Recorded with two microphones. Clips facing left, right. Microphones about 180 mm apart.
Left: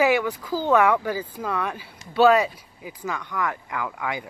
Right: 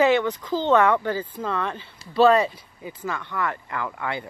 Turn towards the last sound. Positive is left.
turn(degrees=10)  # may be behind; listen again after turning